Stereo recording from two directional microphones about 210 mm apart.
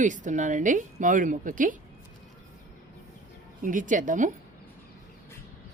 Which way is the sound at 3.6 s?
40° right (ahead or behind).